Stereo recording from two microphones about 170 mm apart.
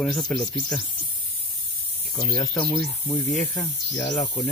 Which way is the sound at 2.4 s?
5° left (ahead or behind).